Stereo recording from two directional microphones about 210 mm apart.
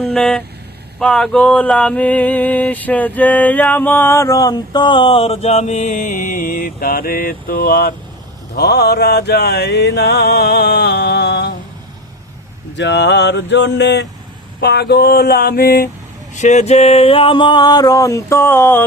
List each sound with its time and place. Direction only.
0.0 s vehicle: centre (ahead or behind)
0.9 s male singing: 5° left (ahead or behind); by 7.9 s 50° left (ahead or behind)
8.5 s music: 50° left (ahead or behind)
12.7 s a sound: 55° left (ahead or behind)
14.6 s music: 50° left (ahead or behind)
16.3 s a sound: 35° left (ahead or behind); by 18.8 s 10° left (ahead or behind)